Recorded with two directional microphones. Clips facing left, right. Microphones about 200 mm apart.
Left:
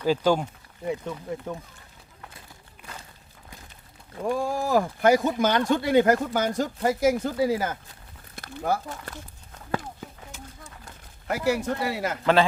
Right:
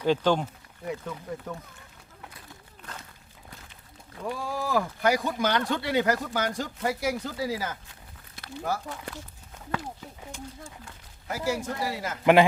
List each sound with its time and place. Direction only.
0.0 s speech: 10° left (ahead or behind)
0.9 s speech: 25° left (ahead or behind)
4.3 s speech: 45° left (ahead or behind)
11.3 s speech: 65° left (ahead or behind)
12.2 s a man's voice: 15° right (ahead or behind)